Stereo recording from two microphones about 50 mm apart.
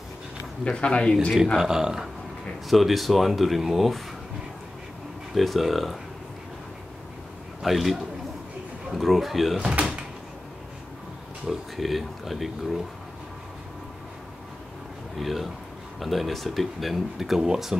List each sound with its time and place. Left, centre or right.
0.7 s speech: left
1.6 s speech: centre
2.7 s speech: centre
5.3 s speech: centre
7.6 s speech: centre
9.6 s door: centre
11.4 s speech: centre
15.1 s speech: centre